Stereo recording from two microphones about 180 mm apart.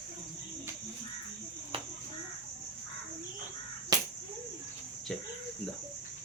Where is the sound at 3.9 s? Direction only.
20° right (ahead or behind).